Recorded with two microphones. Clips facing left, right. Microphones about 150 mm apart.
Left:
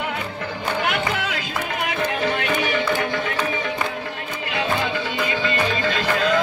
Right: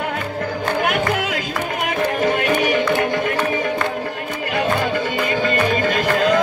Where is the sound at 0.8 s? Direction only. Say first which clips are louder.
Right 4 dB; 50° right (ahead or behind).